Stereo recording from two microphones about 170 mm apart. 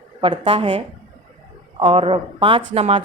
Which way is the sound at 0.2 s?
30° right (ahead or behind).